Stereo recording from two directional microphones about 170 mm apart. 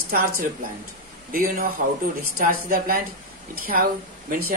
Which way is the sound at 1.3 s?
55° right (ahead or behind).